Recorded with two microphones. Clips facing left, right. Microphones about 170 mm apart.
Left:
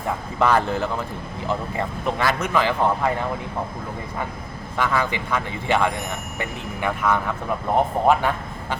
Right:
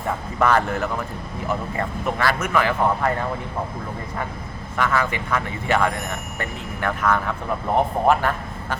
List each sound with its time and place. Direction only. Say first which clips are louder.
0.3 s speech: even; 20° left (ahead or behind)
2.0 s speech: even; 20° left (ahead or behind)
4.8 s speech: even; 15° left (ahead or behind)
7.0 s speech: right 1 dB; 5° left (ahead or behind)